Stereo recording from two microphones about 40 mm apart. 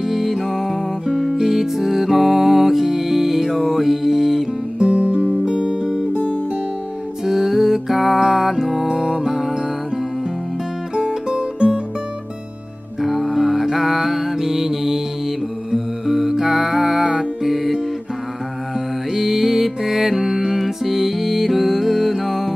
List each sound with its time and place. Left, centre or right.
0.1 s music: centre
4.7 s music: right
11.0 s music: right
13.0 s mantra: centre
15.7 s music: centre
19.1 s music: centre